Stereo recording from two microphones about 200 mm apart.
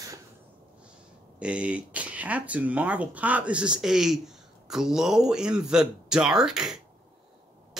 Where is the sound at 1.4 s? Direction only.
5° right (ahead or behind).